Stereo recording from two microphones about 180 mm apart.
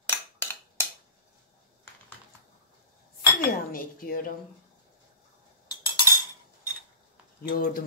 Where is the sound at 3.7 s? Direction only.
50° left (ahead or behind).